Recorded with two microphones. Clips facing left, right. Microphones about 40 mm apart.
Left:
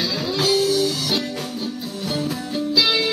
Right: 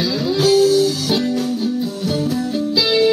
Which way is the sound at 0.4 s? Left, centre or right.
Centre.